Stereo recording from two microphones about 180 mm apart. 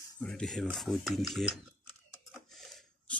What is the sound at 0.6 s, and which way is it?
Speech, centre (ahead or behind).